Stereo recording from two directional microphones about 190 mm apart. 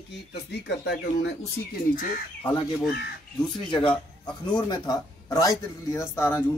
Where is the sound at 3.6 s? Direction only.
25° left (ahead or behind).